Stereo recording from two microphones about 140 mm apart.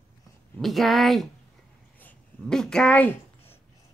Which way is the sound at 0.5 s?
Centre (ahead or behind).